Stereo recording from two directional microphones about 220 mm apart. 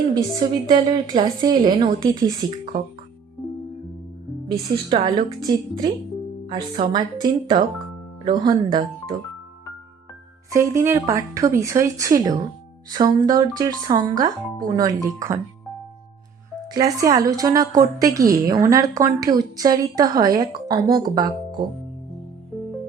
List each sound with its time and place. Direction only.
0.1 s a woman's voice: 20° right (ahead or behind)
4.4 s a woman's voice: 20° right (ahead or behind)
10.5 s a woman's voice: 15° right (ahead or behind)
16.7 s a woman's voice: 15° right (ahead or behind)